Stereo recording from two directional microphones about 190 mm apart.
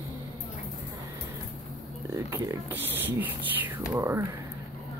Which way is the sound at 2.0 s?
15° right (ahead or behind).